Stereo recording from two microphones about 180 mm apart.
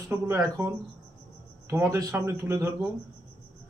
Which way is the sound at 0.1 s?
15° right (ahead or behind).